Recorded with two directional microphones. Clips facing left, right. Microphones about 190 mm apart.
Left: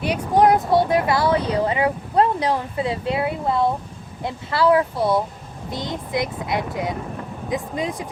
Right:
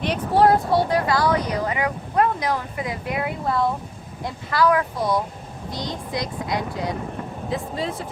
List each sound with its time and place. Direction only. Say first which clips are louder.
0.0 s speech: left 1 dB; 15° left (ahead or behind)